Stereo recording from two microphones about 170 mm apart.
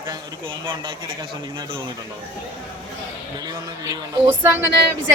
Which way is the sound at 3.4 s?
20° right (ahead or behind).